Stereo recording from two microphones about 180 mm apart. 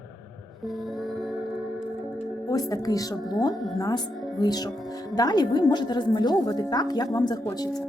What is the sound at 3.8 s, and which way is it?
A woman's voice, 20° left (ahead or behind).